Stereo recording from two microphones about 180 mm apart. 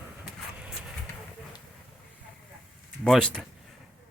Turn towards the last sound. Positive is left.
turn(degrees=0)  # may be behind; listen again after turning